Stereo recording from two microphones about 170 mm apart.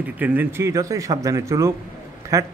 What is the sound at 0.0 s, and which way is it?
A man's voice, 10° right (ahead or behind).